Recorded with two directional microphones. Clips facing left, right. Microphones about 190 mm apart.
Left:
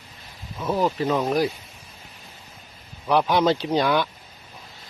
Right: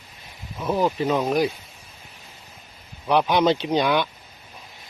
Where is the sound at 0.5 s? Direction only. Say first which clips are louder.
Right 1 dB; 5° right (ahead or behind).